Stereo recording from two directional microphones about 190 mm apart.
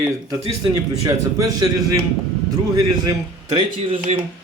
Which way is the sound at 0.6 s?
20° right (ahead or behind).